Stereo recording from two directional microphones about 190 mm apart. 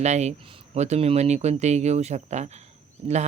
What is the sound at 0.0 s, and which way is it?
Speech, 35° right (ahead or behind).